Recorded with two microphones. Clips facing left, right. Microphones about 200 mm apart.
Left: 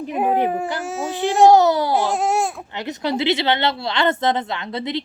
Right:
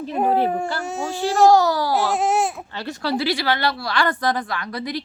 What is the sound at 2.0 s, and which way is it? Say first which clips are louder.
Baby cry: even; centre (ahead or behind).